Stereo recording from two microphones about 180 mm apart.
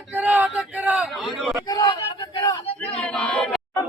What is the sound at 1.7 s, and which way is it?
Speech, 20° left (ahead or behind).